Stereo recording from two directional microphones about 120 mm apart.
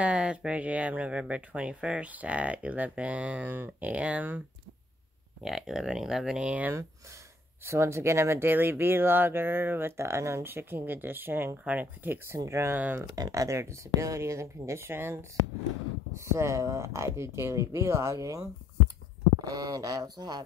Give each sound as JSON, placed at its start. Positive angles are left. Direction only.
{"t": 0.0, "sound": "speech", "side_deg": -10}
{"t": 5.4, "sound": "speech", "side_deg": -5}
{"t": 12.7, "sound": "speech", "side_deg": -15}
{"t": 13.1, "sound": "speech", "side_deg": -30}
{"t": 19.5, "sound": "speech", "side_deg": -30}